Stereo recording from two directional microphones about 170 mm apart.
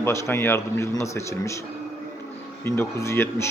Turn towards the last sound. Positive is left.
turn(degrees=15)  # may be behind; listen again after turning